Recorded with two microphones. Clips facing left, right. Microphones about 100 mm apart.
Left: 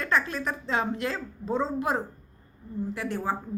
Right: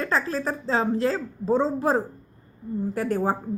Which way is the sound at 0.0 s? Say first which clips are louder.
Right 2 dB; 30° right (ahead or behind).